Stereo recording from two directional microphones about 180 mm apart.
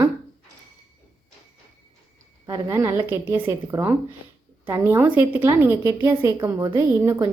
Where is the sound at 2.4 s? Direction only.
15° right (ahead or behind).